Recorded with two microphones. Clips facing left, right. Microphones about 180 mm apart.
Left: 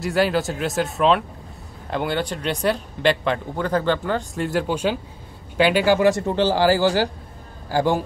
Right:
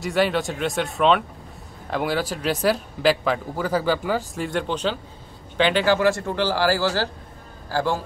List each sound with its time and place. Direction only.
0.0 s a man's voice: centre (ahead or behind); by 8.0 s 15° left (ahead or behind)